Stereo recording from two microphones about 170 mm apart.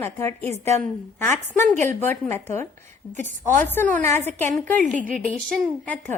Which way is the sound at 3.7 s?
10° left (ahead or behind).